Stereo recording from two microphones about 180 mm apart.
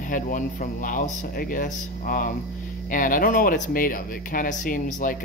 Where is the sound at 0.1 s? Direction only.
50° left (ahead or behind).